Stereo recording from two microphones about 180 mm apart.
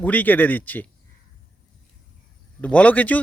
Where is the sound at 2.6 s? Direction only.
5° left (ahead or behind).